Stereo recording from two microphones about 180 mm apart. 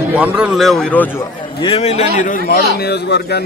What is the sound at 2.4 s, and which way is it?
Speech, 60° left (ahead or behind).